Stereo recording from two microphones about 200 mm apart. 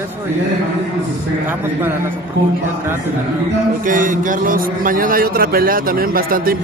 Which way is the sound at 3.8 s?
40° right (ahead or behind).